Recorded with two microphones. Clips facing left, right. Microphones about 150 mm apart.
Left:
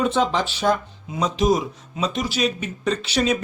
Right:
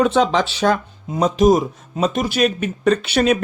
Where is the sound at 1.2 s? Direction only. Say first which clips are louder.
Right 6 dB; 50° right (ahead or behind).